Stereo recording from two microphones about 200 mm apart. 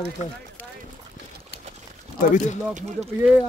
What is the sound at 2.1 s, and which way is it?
Speech, 40° left (ahead or behind).